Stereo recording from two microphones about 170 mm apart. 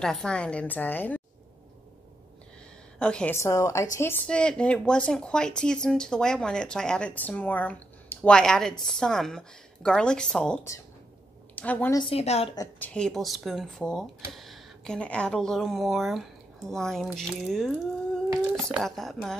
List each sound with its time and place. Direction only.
0.0 s a woman's voice: 5° left (ahead or behind)
3.0 s a woman's voice: 5° left (ahead or behind)
11.9 s a woman's voice: 30° left (ahead or behind)
12.7 s speech: 5° left (ahead or behind)